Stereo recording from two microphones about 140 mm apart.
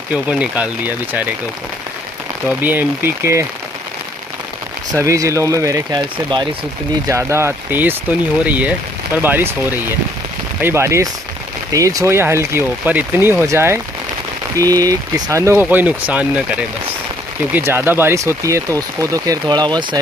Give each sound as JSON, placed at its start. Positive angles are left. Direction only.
{"t": 0.1, "sound": "speech", "side_deg": -10}
{"t": 2.6, "sound": "speech", "side_deg": -15}
{"t": 4.9, "sound": "speech", "side_deg": -25}
{"t": 7.1, "sound": "speech", "side_deg": -20}